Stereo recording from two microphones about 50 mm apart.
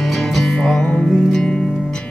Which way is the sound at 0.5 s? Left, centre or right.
Centre.